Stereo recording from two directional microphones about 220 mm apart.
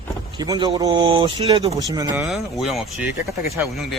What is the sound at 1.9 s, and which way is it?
Speech, 15° right (ahead or behind).